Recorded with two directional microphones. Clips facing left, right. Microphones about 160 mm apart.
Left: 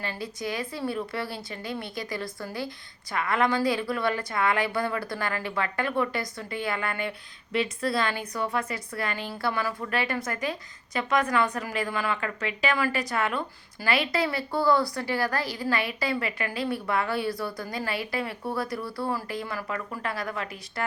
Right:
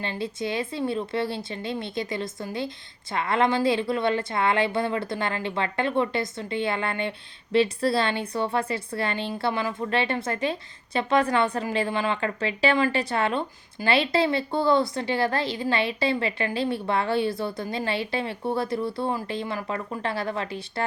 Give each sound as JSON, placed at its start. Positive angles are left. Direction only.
{"t": 0.0, "sound": "a woman's voice", "side_deg": -25}